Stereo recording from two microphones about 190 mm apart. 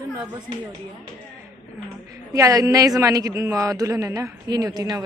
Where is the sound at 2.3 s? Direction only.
15° right (ahead or behind).